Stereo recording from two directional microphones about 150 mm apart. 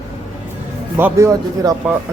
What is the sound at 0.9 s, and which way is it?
Speech, 15° right (ahead or behind).